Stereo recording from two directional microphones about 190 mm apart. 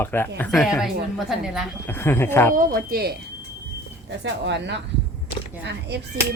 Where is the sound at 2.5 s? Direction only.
50° right (ahead or behind).